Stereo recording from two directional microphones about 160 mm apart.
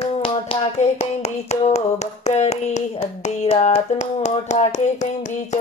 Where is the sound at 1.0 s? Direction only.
45° left (ahead or behind).